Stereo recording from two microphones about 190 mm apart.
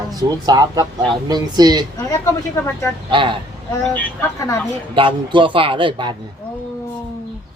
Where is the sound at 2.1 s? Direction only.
15° left (ahead or behind).